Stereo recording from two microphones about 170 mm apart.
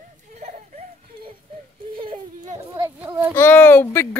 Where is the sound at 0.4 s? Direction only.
40° right (ahead or behind).